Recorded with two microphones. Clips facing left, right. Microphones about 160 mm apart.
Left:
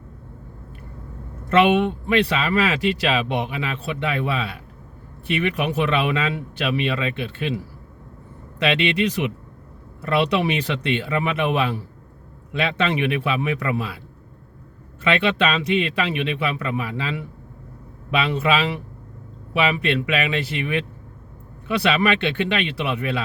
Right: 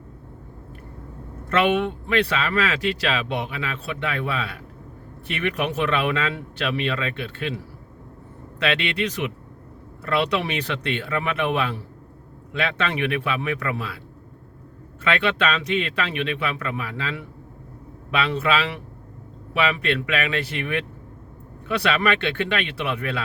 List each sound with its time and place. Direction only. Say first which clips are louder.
1.5 s speech: left 4 dB; 15° left (ahead or behind)
8.5 s speech: left 4 dB; 15° left (ahead or behind)
15.0 s speech: left 2 dB; 15° left (ahead or behind)